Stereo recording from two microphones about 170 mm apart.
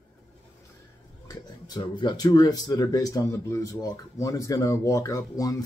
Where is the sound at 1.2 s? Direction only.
25° left (ahead or behind).